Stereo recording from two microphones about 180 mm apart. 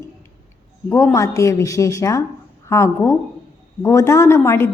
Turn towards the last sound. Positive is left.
turn(degrees=15)  # may be behind; listen again after turning